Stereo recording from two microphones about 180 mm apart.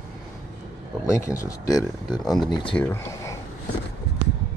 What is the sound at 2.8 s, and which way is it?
Speech, 15° left (ahead or behind).